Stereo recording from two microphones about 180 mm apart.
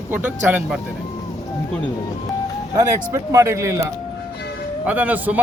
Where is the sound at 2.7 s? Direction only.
15° right (ahead or behind).